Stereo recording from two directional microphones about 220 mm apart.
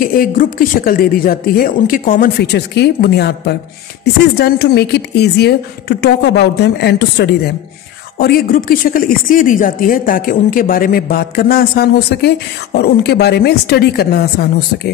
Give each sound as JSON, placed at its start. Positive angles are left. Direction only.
{"t": 0.0, "sound": "speech", "side_deg": 40}